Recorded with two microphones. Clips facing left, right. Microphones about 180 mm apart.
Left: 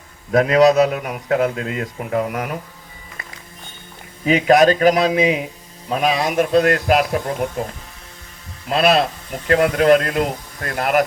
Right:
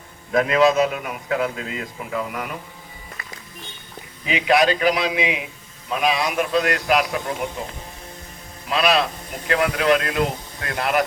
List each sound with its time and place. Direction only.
0.3 s a man's voice: 40° left (ahead or behind)
4.3 s a man's voice: 45° left (ahead or behind)
8.7 s a man's voice: 45° left (ahead or behind)